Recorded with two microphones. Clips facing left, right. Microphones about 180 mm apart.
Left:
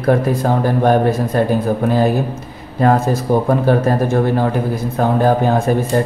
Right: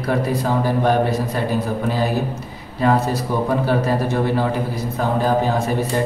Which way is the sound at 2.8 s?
50° left (ahead or behind).